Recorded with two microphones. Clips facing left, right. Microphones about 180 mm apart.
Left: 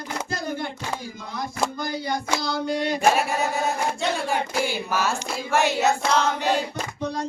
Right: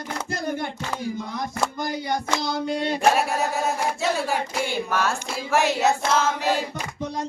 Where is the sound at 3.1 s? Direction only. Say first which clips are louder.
Even; centre (ahead or behind).